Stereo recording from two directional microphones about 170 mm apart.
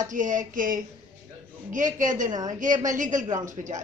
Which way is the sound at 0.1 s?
50° right (ahead or behind).